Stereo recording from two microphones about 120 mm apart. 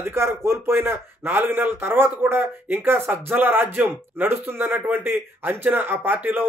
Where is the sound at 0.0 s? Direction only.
20° right (ahead or behind).